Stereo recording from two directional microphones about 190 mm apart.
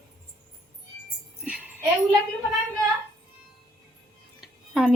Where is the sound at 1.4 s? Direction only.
5° right (ahead or behind).